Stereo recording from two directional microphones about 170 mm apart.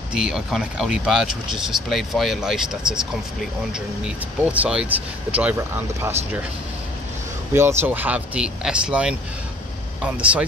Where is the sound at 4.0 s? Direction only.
5° right (ahead or behind).